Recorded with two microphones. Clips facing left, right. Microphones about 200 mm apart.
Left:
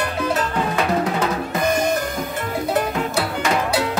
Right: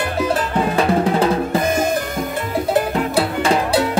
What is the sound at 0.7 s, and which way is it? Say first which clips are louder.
Drum: right 5 dB; 30° right (ahead or behind).